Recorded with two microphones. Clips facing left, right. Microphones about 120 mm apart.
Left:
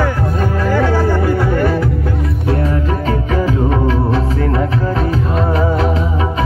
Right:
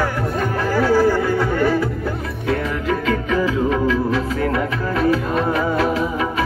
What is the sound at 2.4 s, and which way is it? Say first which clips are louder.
Music: left 2 dB; 35° left (ahead or behind).